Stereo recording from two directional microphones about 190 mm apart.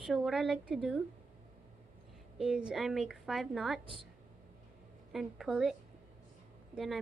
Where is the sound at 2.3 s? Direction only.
5° right (ahead or behind).